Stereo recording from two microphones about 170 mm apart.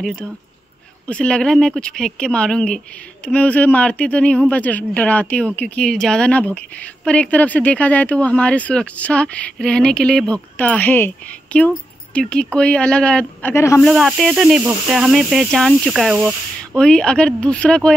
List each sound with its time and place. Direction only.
0.0 s speech: centre (ahead or behind)
13.8 s speech: centre (ahead or behind)